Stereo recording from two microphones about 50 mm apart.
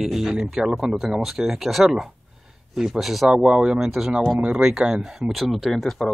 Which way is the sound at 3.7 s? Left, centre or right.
Centre.